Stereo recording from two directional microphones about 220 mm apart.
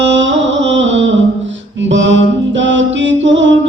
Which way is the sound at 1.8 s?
55° right (ahead or behind).